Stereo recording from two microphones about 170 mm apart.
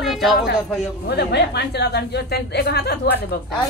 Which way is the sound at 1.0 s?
80° left.